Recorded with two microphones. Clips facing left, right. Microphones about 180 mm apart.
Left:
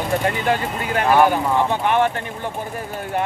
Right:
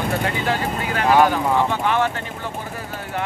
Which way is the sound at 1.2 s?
15° left (ahead or behind).